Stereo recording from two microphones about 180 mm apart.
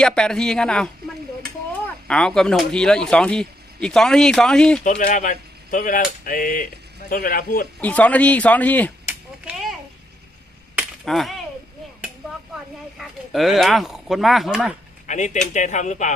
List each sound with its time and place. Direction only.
0.0 s speech: 5° left (ahead or behind)
4.8 s speech: 45° left (ahead or behind)
7.8 s speech: 10° left (ahead or behind)
9.0 s a sound: 5° right (ahead or behind)
11.0 s speech: centre (ahead or behind)
13.0 s speech: centre (ahead or behind)
15.0 s speech: 40° left (ahead or behind)